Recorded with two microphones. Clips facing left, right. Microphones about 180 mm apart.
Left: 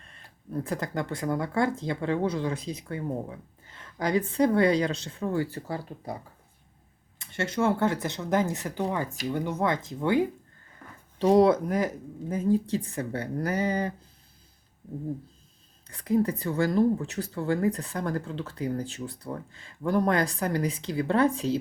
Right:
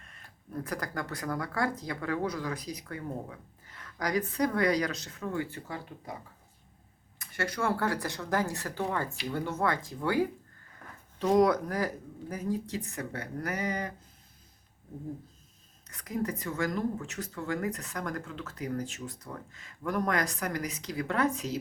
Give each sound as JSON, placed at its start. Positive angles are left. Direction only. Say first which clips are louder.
{"t": 0.0, "sound": "speech", "louder": "left 3 dB", "side_deg": 30}
{"t": 7.2, "sound": "speech", "louder": "left 5 dB", "side_deg": 25}
{"t": 15.9, "sound": "speech", "louder": "left 8 dB", "side_deg": 30}